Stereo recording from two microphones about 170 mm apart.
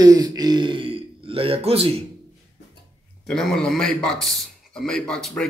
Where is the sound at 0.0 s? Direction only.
20° right (ahead or behind).